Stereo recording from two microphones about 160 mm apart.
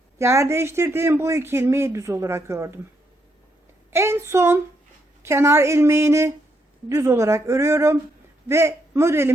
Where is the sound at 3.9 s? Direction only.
15° right (ahead or behind).